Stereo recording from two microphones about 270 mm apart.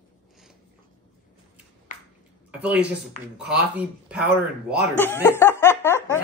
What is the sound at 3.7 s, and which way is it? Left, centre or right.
Speech, centre.